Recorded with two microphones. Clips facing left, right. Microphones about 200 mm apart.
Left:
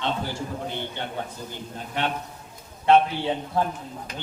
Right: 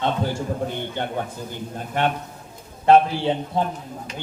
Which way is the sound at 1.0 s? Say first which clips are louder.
Right 5 dB; 50° right (ahead or behind).